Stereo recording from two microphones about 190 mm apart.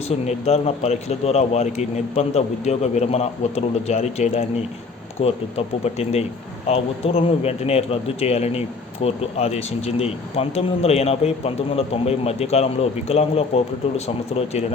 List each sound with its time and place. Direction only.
0.1 s speech: 35° left (ahead or behind)